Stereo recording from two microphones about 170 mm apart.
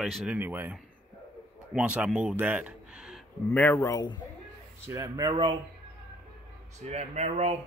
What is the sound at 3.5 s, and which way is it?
Speech, 10° left (ahead or behind).